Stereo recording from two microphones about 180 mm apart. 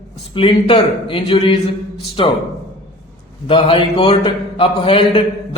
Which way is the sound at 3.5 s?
30° left (ahead or behind).